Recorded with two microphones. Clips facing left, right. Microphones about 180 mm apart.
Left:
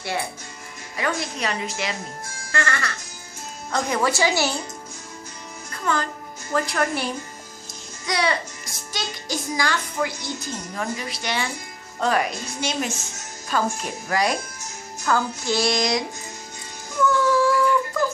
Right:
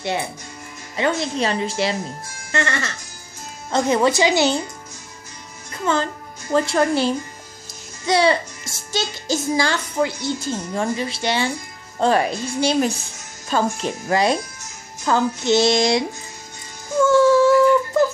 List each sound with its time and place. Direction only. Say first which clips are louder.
0.9 s a child's voice: right 6 dB; 25° right (ahead or behind)
5.9 s a child's voice: right 4 dB; 25° right (ahead or behind)
17.0 s a sound: right 6 dB; 25° right (ahead or behind)